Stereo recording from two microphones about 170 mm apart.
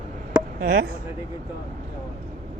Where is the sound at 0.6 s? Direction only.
55° right (ahead or behind).